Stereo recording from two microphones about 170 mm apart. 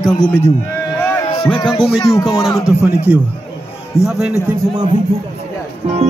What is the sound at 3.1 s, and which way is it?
A man's voice, 5° right (ahead or behind).